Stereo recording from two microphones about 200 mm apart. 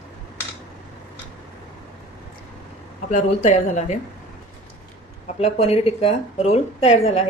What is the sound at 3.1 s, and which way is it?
Speech, 35° left (ahead or behind).